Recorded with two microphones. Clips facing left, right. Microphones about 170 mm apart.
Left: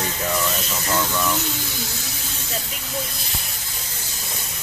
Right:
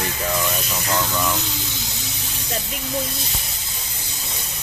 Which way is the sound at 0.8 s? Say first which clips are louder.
Even; 15° right (ahead or behind).